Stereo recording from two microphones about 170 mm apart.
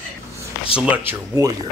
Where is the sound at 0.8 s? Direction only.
10° right (ahead or behind).